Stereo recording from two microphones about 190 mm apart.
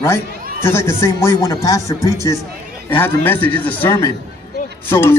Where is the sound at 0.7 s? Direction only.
15° left (ahead or behind).